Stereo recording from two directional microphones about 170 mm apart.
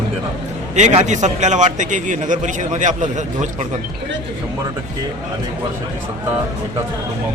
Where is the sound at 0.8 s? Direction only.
45° right (ahead or behind).